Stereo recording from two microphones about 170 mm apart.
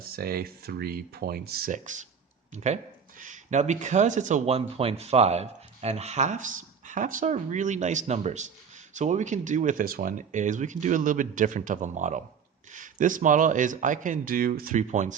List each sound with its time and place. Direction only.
0.0 s speech: 60° right (ahead or behind); by 15.1 s 45° right (ahead or behind)